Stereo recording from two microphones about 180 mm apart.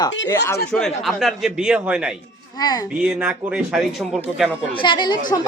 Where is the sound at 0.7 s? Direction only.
5° left (ahead or behind).